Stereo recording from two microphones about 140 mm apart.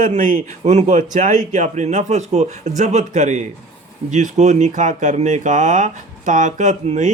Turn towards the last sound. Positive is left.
turn(degrees=-60)  # may be behind; listen again after turning